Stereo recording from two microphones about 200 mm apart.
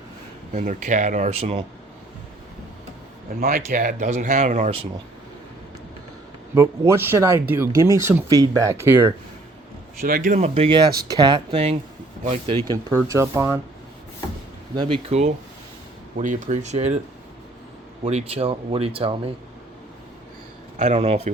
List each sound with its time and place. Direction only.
0.5 s speech: 40° right (ahead or behind)
3.4 s speech: 45° right (ahead or behind)
6.5 s speech: 15° right (ahead or behind)
10.0 s speech: 45° right (ahead or behind)
12.6 s speech: 20° right (ahead or behind)
14.8 s speech: 25° right (ahead or behind)
18.0 s speech: 30° right (ahead or behind)
20.7 s speech: 35° right (ahead or behind)